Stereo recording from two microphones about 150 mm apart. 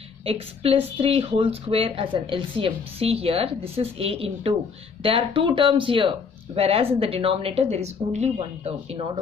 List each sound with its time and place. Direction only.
0.2 s speech: 40° right (ahead or behind)